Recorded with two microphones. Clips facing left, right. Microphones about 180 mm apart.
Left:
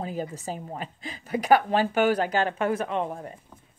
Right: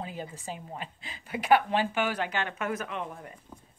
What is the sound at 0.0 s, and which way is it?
A woman's voice, 45° left (ahead or behind).